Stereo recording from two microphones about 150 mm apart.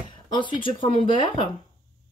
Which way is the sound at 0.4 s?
35° left (ahead or behind).